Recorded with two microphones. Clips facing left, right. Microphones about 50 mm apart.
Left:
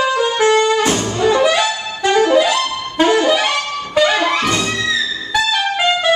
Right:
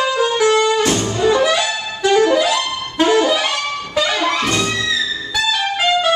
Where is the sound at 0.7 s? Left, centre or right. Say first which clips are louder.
Left 1 dB; centre.